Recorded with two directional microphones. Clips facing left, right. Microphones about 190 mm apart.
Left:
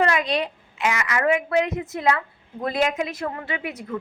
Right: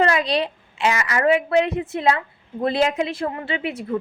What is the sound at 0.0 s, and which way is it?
A woman's voice, 35° right (ahead or behind).